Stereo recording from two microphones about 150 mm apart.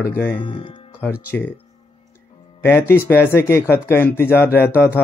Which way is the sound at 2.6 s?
15° left (ahead or behind).